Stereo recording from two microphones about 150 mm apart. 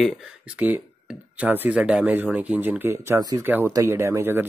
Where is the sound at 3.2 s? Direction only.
25° right (ahead or behind).